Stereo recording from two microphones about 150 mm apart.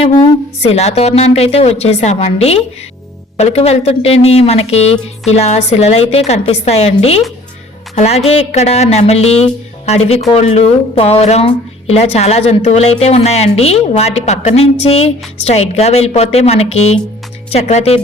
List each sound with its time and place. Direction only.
0.0 s a woman's voice: 40° left (ahead or behind)